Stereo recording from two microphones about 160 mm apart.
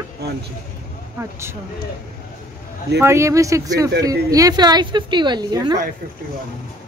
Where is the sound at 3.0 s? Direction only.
15° right (ahead or behind).